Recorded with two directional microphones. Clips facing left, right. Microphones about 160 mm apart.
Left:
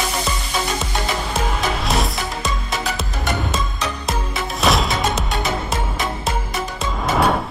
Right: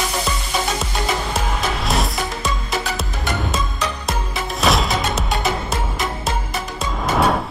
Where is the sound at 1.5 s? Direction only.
Centre (ahead or behind).